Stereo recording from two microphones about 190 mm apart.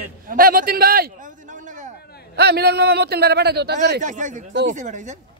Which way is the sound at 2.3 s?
55° right (ahead or behind).